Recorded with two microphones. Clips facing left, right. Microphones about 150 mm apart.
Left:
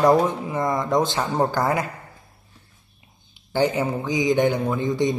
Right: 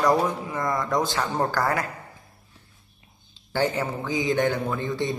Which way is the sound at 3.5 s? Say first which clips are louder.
Left 4 dB; 20° left (ahead or behind).